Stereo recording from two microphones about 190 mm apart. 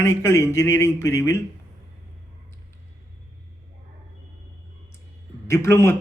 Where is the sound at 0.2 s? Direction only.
15° left (ahead or behind).